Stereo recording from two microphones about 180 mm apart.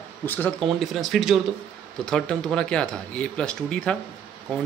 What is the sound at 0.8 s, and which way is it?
Speech, centre (ahead or behind).